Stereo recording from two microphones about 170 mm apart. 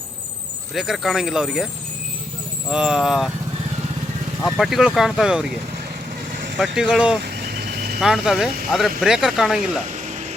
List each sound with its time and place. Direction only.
0.7 s speech: centre (ahead or behind)
4.5 s speech: centre (ahead or behind)
6.6 s speech: 5° right (ahead or behind)
7.3 s vehicle: 65° right (ahead or behind)
8.0 s speech: centre (ahead or behind)